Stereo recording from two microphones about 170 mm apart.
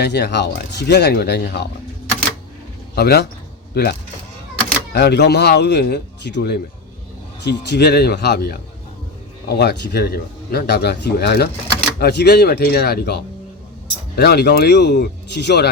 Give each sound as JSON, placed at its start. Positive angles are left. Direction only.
{"t": 0.0, "sound": "speech", "side_deg": 80}
{"t": 2.9, "sound": "speech", "side_deg": 70}